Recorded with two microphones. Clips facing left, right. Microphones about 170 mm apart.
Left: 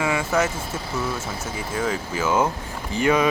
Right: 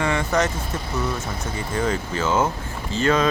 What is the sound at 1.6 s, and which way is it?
Speech, 5° left (ahead or behind).